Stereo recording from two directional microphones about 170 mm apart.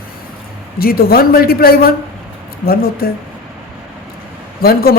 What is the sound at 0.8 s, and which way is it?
Speech, 60° left (ahead or behind).